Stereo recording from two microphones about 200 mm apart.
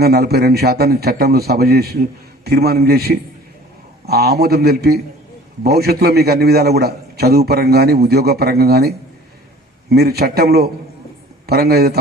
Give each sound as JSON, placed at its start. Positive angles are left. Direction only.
{"t": 0.0, "sound": "a man's voice", "side_deg": -50}